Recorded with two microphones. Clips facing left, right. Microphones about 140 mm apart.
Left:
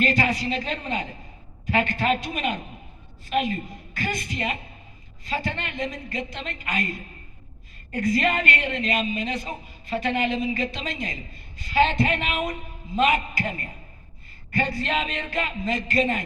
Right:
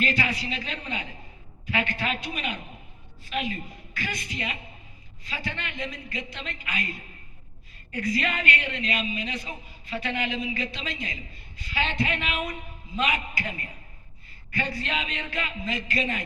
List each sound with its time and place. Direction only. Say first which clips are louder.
0.0 s a woman's voice: left 5 dB; 45° left (ahead or behind)